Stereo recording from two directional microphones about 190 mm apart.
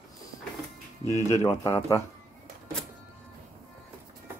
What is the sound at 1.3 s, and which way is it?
Speech, 15° left (ahead or behind).